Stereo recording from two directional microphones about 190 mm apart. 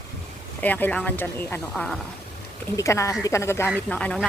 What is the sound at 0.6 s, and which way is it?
A woman's voice, 10° left (ahead or behind).